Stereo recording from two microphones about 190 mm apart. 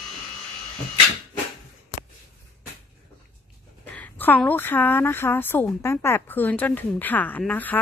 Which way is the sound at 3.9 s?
10° left (ahead or behind).